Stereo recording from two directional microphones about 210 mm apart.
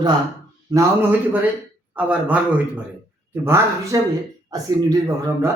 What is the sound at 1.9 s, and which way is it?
Speech, 5° right (ahead or behind).